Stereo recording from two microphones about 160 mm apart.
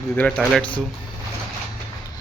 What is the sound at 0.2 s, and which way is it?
Speech, 5° left (ahead or behind).